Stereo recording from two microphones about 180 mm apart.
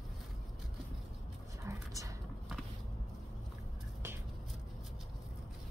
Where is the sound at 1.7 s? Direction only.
15° right (ahead or behind).